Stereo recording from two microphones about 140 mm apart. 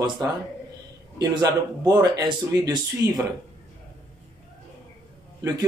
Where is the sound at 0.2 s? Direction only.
25° right (ahead or behind).